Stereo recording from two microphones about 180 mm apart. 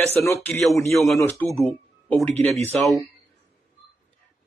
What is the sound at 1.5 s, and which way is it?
Speech, centre (ahead or behind).